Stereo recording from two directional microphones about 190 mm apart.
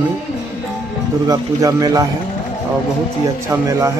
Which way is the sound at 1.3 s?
20° right (ahead or behind).